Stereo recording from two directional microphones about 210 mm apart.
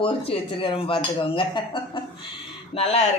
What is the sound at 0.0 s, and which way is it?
Cutlery, 25° left (ahead or behind).